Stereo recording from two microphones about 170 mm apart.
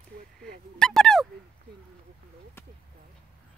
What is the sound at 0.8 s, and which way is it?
Dog, 5° left (ahead or behind).